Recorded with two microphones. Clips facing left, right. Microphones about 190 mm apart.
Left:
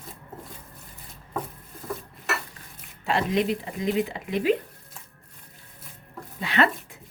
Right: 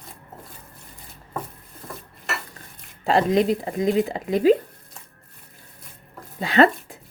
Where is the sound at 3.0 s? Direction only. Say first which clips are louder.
Right 6 dB; 35° right (ahead or behind).